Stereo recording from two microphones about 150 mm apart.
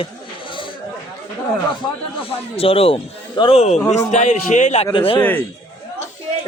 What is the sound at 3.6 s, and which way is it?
A man's voice, 50° left (ahead or behind).